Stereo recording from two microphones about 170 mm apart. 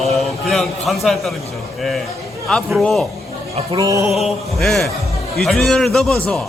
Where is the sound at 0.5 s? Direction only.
Centre (ahead or behind).